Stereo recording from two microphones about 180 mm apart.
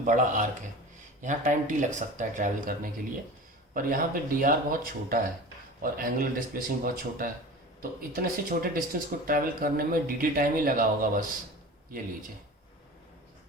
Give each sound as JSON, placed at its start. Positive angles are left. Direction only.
{"t": 0.0, "sound": "speech", "side_deg": -45}